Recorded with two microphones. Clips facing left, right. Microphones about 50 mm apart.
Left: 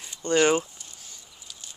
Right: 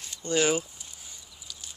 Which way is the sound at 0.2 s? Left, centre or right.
Left.